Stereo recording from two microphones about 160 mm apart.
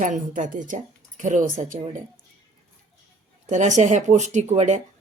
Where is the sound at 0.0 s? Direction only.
55° right (ahead or behind).